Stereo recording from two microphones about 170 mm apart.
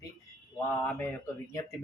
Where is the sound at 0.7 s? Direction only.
15° left (ahead or behind).